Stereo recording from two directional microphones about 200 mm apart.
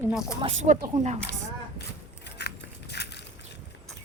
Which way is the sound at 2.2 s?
55° left (ahead or behind).